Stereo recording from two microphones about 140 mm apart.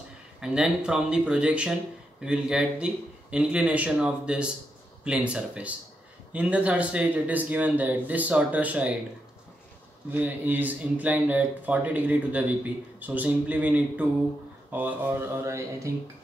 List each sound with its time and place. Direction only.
0.4 s speech: 5° right (ahead or behind)
10.1 s speech: 10° right (ahead or behind)